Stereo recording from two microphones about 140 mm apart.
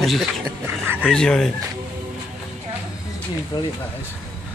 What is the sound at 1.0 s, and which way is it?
Speech, 5° left (ahead or behind).